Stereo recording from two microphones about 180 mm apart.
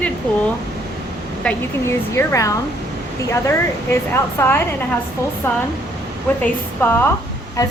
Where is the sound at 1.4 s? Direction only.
15° left (ahead or behind).